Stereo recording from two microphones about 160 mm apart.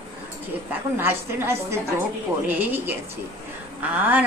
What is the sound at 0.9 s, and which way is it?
A woman's voice, 15° right (ahead or behind).